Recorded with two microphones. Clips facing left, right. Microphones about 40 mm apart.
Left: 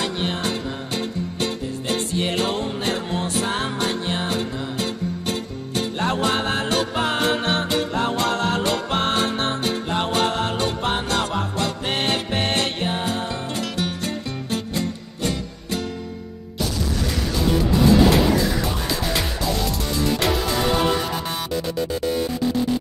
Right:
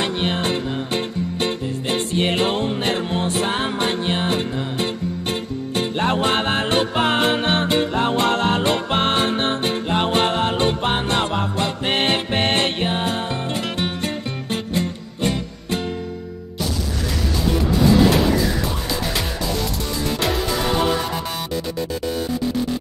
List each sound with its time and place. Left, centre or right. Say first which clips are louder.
0.0 s music: right 3 dB; right